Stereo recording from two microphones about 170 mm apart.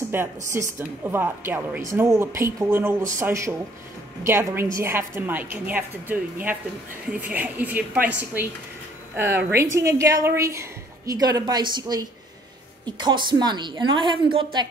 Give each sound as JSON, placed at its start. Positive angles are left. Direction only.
{"t": 0.1, "sound": "a woman's voice", "side_deg": -15}
{"t": 9.1, "sound": "a woman's voice", "side_deg": -15}